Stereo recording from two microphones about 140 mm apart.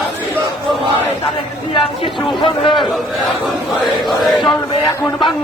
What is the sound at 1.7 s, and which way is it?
Speech, 40° left (ahead or behind).